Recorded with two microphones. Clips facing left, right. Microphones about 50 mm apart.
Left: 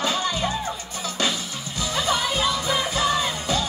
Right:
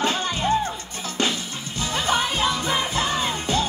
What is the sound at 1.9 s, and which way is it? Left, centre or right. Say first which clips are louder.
Music: right 1 dB; right.